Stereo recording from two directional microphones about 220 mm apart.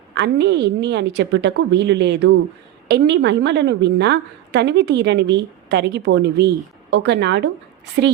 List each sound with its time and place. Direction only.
0.1 s a woman's voice: 50° right (ahead or behind)